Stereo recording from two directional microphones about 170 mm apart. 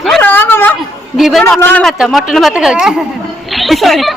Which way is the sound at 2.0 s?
Centre (ahead or behind).